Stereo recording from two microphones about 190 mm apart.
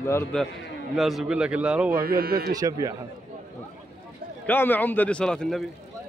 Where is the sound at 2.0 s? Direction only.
50° right (ahead or behind).